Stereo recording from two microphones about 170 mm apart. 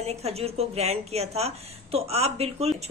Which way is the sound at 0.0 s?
35° right (ahead or behind).